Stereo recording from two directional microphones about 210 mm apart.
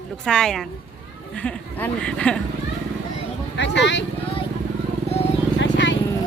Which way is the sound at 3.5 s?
55° left (ahead or behind).